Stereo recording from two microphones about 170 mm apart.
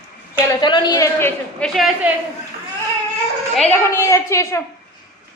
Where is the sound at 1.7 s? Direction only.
Centre (ahead or behind).